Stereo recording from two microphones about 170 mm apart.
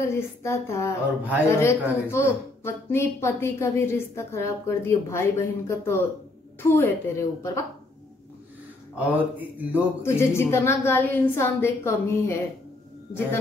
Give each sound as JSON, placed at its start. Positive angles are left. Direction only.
{"t": 0.0, "sound": "speech", "side_deg": 15}
{"t": 8.9, "sound": "speech", "side_deg": -10}
{"t": 9.8, "sound": "speech", "side_deg": 15}